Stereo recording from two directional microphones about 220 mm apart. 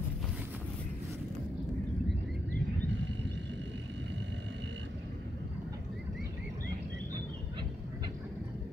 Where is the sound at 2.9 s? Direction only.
55° right (ahead or behind).